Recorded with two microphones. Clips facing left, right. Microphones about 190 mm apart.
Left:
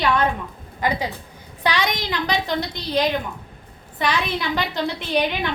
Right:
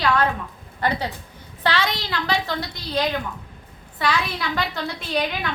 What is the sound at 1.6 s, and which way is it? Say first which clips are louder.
A woman's voice: left 1 dB; 15° left (ahead or behind).